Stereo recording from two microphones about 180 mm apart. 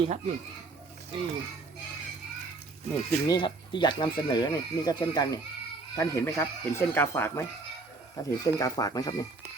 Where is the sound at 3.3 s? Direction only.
25° left (ahead or behind).